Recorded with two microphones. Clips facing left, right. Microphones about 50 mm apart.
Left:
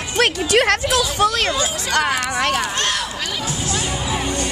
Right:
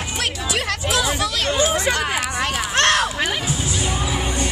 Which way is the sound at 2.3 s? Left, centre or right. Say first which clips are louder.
Left 4 dB; left.